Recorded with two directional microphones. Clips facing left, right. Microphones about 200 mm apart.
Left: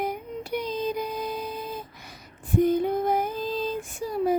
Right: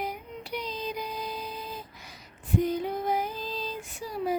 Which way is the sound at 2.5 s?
50° left (ahead or behind).